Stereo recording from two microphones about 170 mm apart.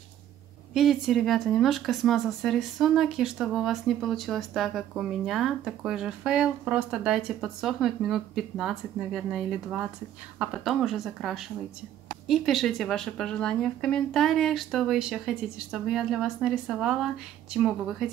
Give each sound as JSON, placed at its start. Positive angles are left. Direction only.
{"t": 0.7, "sound": "speech", "side_deg": 0}